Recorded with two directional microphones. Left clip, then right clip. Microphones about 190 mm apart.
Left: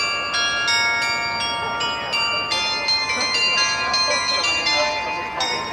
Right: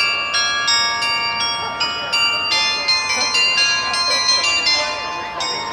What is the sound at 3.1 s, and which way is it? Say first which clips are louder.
Bell: right 3 dB; 30° right (ahead or behind).